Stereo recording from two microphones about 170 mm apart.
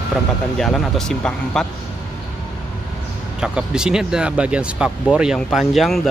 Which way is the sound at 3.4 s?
5° right (ahead or behind).